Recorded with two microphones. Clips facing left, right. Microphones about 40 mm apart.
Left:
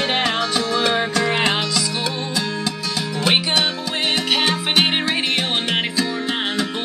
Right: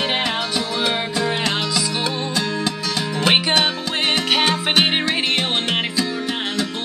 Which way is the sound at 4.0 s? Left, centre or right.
Right.